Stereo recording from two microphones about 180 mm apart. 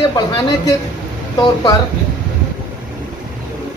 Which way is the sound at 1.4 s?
25° left (ahead or behind).